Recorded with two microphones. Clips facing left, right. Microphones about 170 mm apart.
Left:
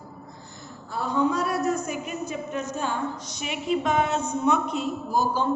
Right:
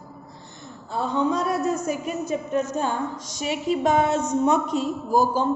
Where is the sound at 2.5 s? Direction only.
45° right (ahead or behind).